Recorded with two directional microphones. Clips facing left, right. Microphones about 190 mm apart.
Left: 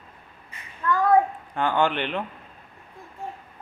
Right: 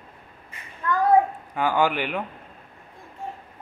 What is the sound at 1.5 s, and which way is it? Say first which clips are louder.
Speech: right 1 dB; 5° right (ahead or behind).